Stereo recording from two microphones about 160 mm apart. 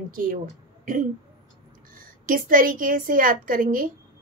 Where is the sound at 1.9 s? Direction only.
60° right (ahead or behind).